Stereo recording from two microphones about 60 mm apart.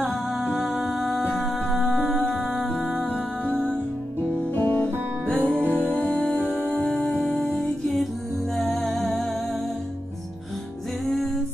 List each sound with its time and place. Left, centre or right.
0.3 s music: centre
4.6 s guitar: left
5.3 s music: right
6.2 s music: left
8.7 s music: centre